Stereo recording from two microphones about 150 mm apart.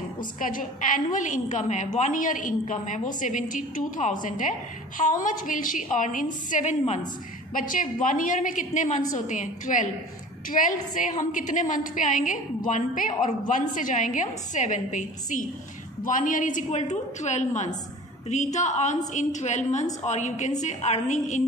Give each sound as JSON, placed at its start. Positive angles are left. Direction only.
{"t": 0.4, "sound": "a woman's voice", "side_deg": 65}
{"t": 7.5, "sound": "a woman's voice", "side_deg": 65}